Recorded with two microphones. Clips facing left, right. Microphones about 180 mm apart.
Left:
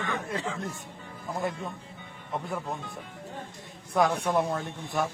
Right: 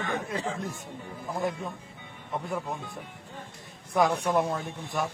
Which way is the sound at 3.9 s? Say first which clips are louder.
Even; centre (ahead or behind).